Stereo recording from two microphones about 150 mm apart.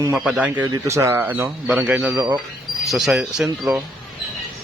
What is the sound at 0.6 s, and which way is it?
A man's voice, 20° right (ahead or behind).